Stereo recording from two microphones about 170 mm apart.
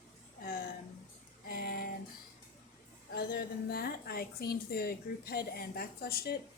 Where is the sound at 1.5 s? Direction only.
60° left (ahead or behind).